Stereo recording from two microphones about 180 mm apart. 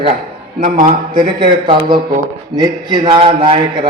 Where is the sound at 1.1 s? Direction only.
25° right (ahead or behind).